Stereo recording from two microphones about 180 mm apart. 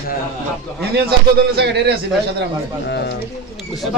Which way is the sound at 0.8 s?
60° right (ahead or behind).